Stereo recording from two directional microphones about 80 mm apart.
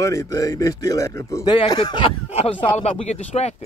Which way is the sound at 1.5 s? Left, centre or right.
Left.